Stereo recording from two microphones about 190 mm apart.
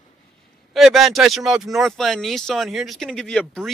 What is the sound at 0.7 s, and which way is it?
Speech, centre (ahead or behind).